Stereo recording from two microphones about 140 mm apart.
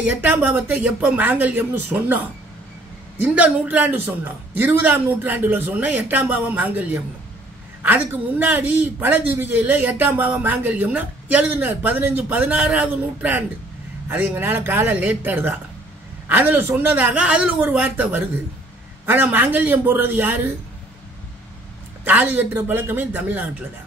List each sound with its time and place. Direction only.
0.0 s speech: 10° right (ahead or behind)
22.0 s speech: 15° right (ahead or behind)